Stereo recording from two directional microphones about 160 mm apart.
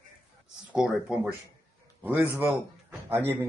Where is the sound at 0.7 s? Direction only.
5° right (ahead or behind).